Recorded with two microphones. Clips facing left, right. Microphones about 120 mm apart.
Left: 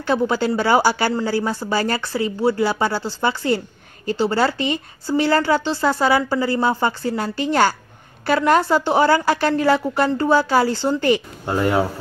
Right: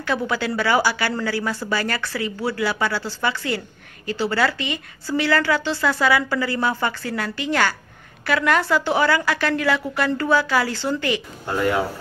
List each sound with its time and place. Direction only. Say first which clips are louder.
0.0 s speech: left 4 dB; 30° left (ahead or behind)